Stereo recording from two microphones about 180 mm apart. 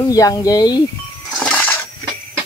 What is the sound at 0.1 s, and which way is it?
Speech, 20° left (ahead or behind).